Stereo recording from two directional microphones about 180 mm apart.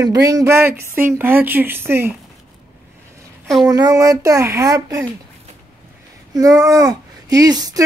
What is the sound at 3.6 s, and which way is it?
Speech, 20° right (ahead or behind).